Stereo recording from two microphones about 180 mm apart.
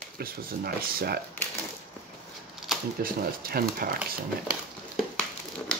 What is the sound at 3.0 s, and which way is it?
Speech, 55° right (ahead or behind).